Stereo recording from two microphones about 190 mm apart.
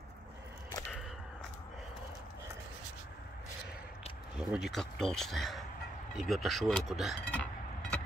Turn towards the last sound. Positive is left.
turn(degrees=5)  # may be behind; listen again after turning